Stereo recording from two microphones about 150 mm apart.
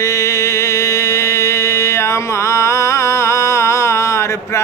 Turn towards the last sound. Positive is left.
turn(degrees=20)  # may be behind; listen again after turning